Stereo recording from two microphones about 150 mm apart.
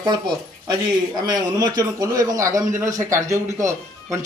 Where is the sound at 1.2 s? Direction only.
25° right (ahead or behind).